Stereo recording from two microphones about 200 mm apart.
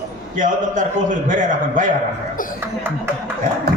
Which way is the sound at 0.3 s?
40° right (ahead or behind).